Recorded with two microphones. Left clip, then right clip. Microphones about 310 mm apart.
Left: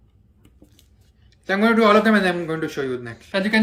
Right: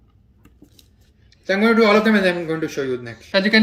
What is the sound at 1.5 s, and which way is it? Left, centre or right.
Speech, centre.